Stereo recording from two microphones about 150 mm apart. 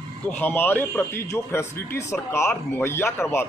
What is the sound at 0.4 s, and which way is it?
A man's voice, 15° left (ahead or behind).